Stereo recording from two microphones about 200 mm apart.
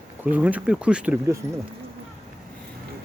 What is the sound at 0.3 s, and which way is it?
Speech, 10° right (ahead or behind).